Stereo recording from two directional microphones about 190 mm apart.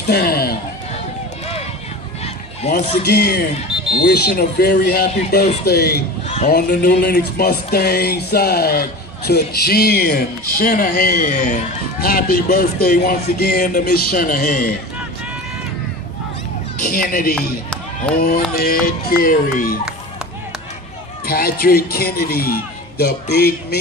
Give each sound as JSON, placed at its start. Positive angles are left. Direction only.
{"t": 0.0, "sound": "speech", "side_deg": 55}
{"t": 2.7, "sound": "speech", "side_deg": 55}
{"t": 6.2, "sound": "a sound", "side_deg": 35}
{"t": 6.5, "sound": "speech", "side_deg": 55}
{"t": 16.8, "sound": "speech", "side_deg": 50}
{"t": 17.4, "sound": "chop", "side_deg": 5}
{"t": 18.5, "sound": "speech", "side_deg": 50}
{"t": 21.3, "sound": "speech", "side_deg": 55}